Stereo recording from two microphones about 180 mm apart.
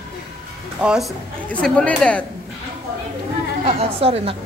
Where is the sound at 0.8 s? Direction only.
5° right (ahead or behind).